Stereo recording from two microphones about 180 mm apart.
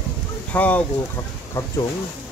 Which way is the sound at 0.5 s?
10° left (ahead or behind).